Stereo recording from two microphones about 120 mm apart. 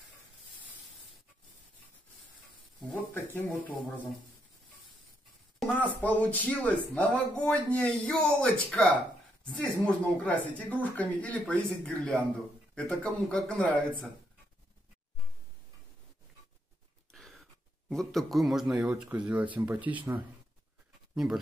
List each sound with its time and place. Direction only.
3.3 s speech: 20° left (ahead or behind)
5.7 s speech: 15° left (ahead or behind)
17.1 s a sound: 5° left (ahead or behind)
17.8 s speech: centre (ahead or behind)